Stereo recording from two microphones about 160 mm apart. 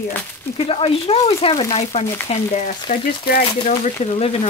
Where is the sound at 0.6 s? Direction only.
35° left (ahead or behind).